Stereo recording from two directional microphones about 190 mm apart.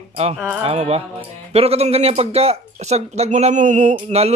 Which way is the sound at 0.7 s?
30° right (ahead or behind).